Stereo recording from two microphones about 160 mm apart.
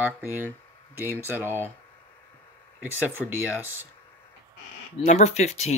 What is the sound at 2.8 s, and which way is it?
Speech, 10° right (ahead or behind).